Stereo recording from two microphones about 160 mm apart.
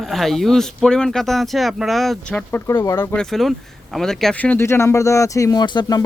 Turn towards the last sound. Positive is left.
turn(degrees=25)  # may be behind; listen again after turning